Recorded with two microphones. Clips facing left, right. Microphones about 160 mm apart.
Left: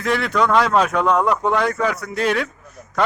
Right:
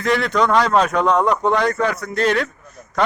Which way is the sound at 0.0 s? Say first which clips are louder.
Right 1 dB; 5° left (ahead or behind).